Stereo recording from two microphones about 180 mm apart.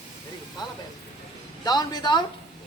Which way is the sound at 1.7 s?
20° left (ahead or behind).